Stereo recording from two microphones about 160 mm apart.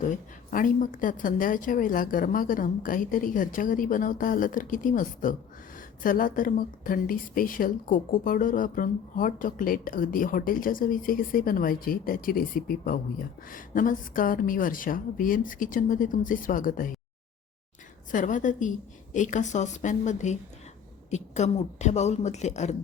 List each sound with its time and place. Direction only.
0.5 s speech: 55° left (ahead or behind)
18.1 s a woman's voice: 55° left (ahead or behind)